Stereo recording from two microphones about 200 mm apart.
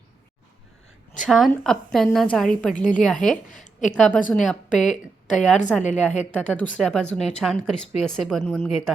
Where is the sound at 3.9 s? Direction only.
5° left (ahead or behind).